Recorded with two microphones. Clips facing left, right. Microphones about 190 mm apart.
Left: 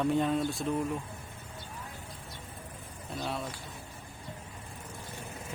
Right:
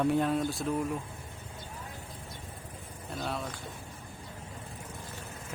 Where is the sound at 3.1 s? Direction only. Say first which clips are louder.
Even; centre (ahead or behind).